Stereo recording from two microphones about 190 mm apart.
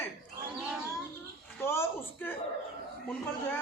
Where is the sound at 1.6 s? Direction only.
15° left (ahead or behind).